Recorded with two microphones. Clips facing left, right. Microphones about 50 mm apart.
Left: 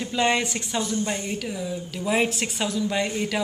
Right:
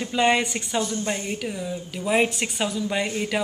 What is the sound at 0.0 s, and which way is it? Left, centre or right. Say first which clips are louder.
Speech: right 2 dB; centre.